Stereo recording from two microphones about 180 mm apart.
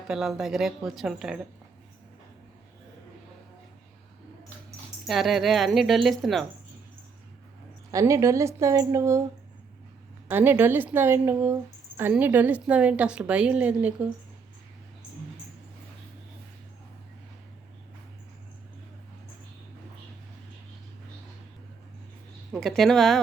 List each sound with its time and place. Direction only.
0.1 s a woman's voice: centre (ahead or behind)
5.0 s a woman's voice: centre (ahead or behind)
7.9 s a woman's voice: 20° right (ahead or behind)
10.2 s a woman's voice: 10° right (ahead or behind)
22.5 s a woman's voice: 5° left (ahead or behind)